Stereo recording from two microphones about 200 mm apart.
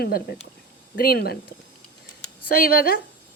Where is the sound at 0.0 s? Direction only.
50° left (ahead or behind).